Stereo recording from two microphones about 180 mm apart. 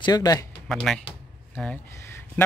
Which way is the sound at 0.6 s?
Centre (ahead or behind).